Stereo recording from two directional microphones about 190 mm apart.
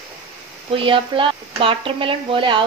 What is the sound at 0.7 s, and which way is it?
Speech, 30° right (ahead or behind).